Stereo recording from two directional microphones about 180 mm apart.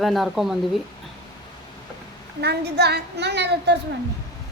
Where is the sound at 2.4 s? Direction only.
65° right (ahead or behind).